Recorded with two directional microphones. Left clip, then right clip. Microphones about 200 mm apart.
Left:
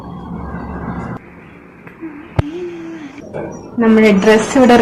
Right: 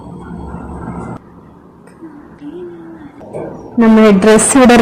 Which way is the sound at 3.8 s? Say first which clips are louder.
Right 2 dB; 45° right (ahead or behind).